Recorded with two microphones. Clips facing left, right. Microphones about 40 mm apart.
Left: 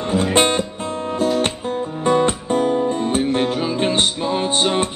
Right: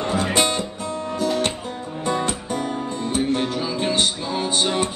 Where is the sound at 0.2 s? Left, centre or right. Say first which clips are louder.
Left 7 dB; left.